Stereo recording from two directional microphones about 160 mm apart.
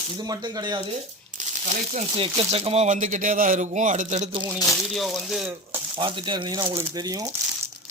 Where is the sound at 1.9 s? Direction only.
40° right (ahead or behind).